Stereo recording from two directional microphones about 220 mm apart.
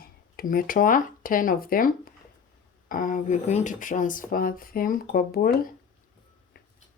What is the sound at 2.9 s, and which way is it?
Speech, 40° left (ahead or behind).